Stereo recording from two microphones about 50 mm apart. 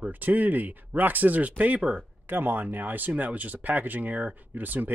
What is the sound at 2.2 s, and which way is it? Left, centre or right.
Speech, right.